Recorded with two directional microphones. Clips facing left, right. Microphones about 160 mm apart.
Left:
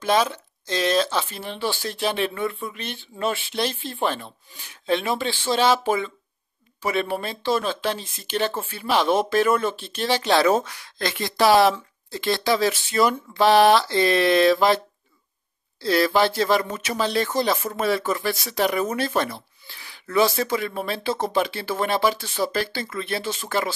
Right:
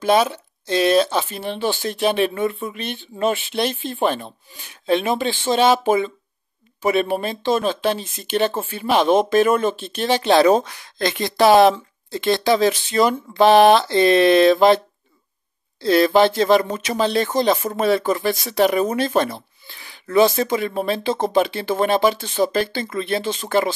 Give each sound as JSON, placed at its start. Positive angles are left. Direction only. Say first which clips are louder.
{"t": 0.0, "sound": "speech", "louder": "right 4 dB", "side_deg": -15}
{"t": 15.8, "sound": "speech", "louder": "right 5 dB", "side_deg": -20}